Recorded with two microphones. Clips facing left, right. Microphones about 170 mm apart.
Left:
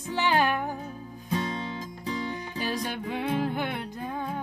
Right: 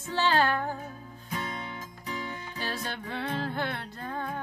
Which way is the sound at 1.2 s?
30° left (ahead or behind).